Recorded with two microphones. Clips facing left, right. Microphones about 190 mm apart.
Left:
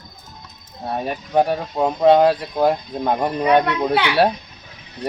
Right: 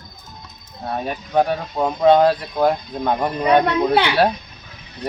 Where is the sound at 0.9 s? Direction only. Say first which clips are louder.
Left 1 dB; 5° left (ahead or behind).